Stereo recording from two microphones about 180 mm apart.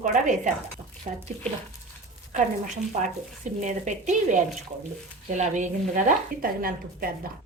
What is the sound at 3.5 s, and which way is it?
A woman's voice, 45° right (ahead or behind).